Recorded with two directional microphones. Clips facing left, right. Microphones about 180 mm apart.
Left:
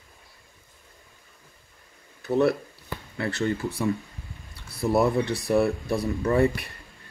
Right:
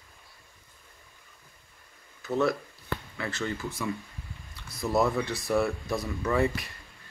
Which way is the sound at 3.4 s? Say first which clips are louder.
Left 7 dB; 35° left (ahead or behind).